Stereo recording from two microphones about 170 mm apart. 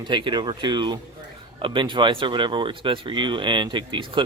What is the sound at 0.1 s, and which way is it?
Speech, 25° right (ahead or behind).